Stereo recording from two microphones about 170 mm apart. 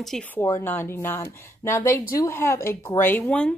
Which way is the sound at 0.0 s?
5° left (ahead or behind).